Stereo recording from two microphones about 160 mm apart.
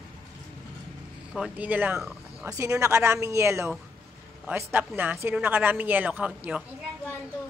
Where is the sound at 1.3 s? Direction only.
5° right (ahead or behind).